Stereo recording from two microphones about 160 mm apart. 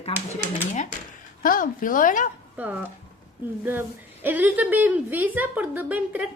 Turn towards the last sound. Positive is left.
turn(degrees=-10)  # may be behind; listen again after turning